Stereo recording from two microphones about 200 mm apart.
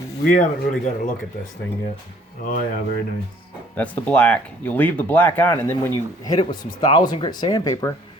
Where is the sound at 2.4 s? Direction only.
45° left (ahead or behind).